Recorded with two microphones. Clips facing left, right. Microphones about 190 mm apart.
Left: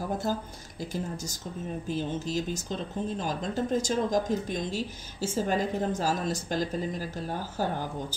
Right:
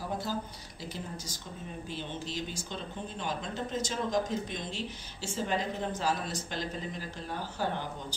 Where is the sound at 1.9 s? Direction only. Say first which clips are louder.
Left 8 dB; 40° left (ahead or behind).